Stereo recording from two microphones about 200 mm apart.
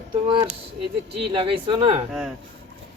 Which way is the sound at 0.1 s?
25° right (ahead or behind).